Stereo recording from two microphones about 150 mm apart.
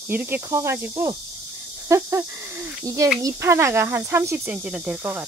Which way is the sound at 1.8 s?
20° right (ahead or behind).